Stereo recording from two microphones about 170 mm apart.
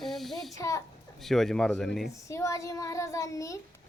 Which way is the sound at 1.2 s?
Centre (ahead or behind).